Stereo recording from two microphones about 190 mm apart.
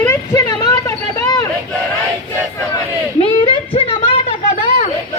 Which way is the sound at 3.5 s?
30° left (ahead or behind).